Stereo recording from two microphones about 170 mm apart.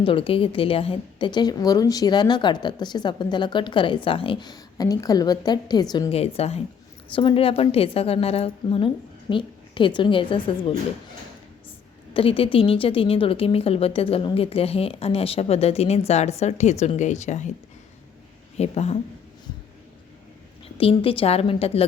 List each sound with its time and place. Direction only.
0.0 s a woman's voice: 30° left (ahead or behind)
6.1 s a woman's voice: 35° left (ahead or behind)
12.1 s a woman's voice: 35° left (ahead or behind)
18.5 s speech: 40° left (ahead or behind)
20.7 s a woman's voice: 30° left (ahead or behind)